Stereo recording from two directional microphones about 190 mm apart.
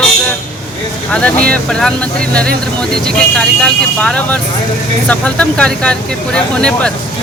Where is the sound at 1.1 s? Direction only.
5° left (ahead or behind).